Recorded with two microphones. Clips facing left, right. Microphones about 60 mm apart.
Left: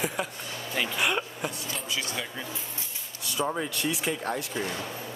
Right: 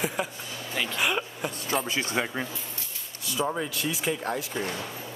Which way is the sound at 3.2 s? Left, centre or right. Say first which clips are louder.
Right 1 dB; centre.